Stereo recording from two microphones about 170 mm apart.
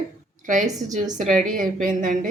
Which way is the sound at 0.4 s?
45° right (ahead or behind).